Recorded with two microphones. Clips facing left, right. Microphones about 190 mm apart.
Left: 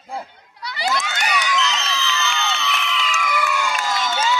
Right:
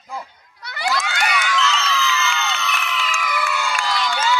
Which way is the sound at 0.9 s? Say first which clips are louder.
Right 2 dB; 20° left (ahead or behind).